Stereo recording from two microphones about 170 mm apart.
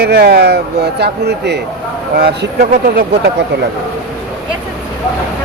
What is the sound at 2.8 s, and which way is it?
Speech, 80° right.